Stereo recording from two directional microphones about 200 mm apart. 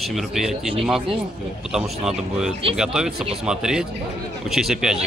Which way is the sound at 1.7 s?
5° right (ahead or behind).